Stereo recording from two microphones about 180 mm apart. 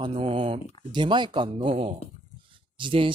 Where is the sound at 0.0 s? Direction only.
30° right (ahead or behind).